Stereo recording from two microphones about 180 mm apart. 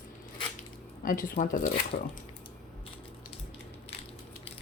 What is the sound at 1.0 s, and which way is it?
Speech, 50° left (ahead or behind).